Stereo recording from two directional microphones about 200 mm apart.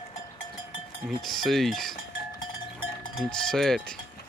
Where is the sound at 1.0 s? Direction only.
Centre (ahead or behind).